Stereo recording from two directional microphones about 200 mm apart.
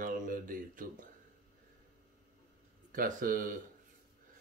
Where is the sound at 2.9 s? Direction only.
45° right (ahead or behind).